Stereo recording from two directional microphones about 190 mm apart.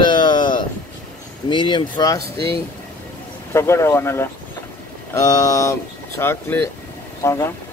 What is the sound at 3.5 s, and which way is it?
Speech, 15° left (ahead or behind).